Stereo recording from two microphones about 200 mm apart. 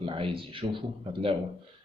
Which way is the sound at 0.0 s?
25° right (ahead or behind).